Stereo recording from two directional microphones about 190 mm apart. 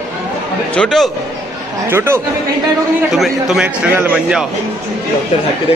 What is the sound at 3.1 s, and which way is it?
A man's voice, centre (ahead or behind).